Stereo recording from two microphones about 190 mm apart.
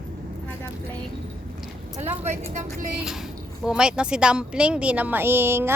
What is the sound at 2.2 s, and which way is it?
Speech, 35° right (ahead or behind).